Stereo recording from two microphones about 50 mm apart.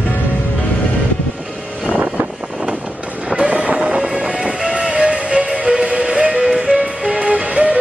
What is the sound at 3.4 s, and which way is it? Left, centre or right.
Vehicle, right.